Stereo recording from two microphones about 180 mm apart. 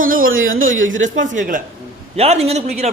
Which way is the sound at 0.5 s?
90° right.